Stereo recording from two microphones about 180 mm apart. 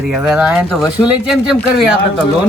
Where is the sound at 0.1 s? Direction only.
5° right (ahead or behind).